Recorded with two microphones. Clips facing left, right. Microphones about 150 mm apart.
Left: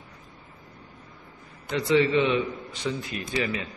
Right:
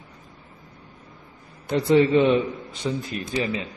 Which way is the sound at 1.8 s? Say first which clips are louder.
Right 4 dB; 50° right (ahead or behind).